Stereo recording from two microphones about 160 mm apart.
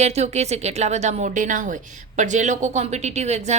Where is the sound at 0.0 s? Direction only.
40° right (ahead or behind).